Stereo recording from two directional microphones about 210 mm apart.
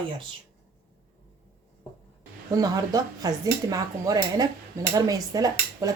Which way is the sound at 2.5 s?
15° right (ahead or behind).